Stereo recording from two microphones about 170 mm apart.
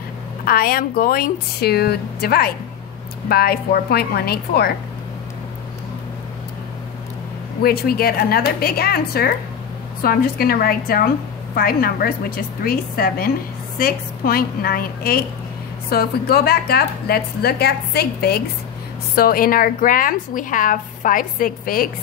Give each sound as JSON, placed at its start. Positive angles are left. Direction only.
{"t": 0.5, "sound": "a woman's voice", "side_deg": 60}
{"t": 7.6, "sound": "a woman's voice", "side_deg": 65}